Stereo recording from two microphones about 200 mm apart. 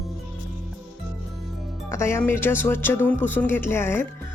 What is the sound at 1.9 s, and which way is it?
Speech, 15° left (ahead or behind).